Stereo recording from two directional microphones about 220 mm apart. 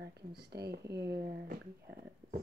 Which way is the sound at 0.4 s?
50° right (ahead or behind).